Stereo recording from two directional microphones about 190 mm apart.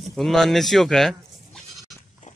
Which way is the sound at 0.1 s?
Centre (ahead or behind).